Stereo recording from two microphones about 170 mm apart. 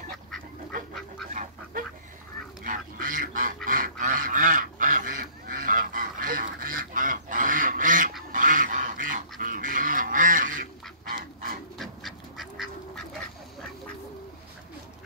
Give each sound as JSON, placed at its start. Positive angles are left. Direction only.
{"t": 1.3, "sound": "duck", "side_deg": -45}
{"t": 11.8, "sound": "duck", "side_deg": 0}